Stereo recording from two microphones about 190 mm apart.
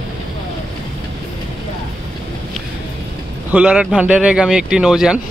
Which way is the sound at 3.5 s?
5° right (ahead or behind).